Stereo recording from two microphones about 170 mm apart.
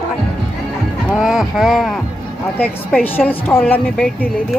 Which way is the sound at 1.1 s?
Centre (ahead or behind).